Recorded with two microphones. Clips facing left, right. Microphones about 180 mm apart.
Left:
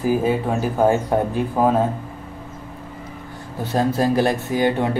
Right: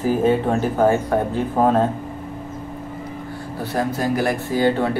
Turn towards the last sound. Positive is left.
turn(degrees=15)  # may be behind; listen again after turning